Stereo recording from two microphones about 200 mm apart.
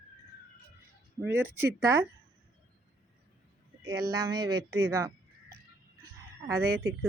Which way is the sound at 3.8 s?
15° right (ahead or behind).